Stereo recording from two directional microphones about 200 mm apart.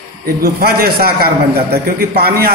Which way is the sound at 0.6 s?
50° right (ahead or behind).